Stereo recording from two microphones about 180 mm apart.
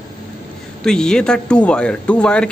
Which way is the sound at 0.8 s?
5° left (ahead or behind).